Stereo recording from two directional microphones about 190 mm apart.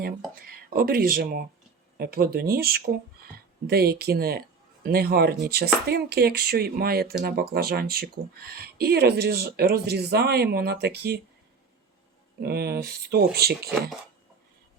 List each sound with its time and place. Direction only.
0.7 s speech: 50° right (ahead or behind)
12.4 s speech: 55° right (ahead or behind)